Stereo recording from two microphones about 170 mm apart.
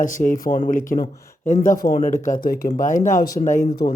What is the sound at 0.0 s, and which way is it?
Speech, 50° left (ahead or behind).